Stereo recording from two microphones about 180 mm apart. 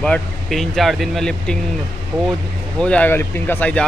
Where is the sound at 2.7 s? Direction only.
5° left (ahead or behind).